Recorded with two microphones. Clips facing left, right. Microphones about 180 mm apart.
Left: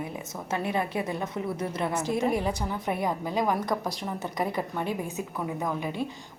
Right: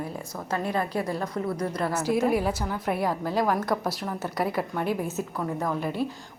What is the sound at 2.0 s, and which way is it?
A woman's voice, 5° right (ahead or behind).